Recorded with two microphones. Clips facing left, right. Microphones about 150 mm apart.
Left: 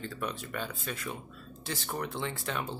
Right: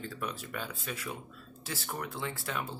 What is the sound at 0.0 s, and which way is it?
Speech, 10° right (ahead or behind).